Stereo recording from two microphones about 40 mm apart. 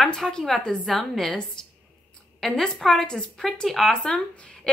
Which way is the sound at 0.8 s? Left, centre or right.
Centre.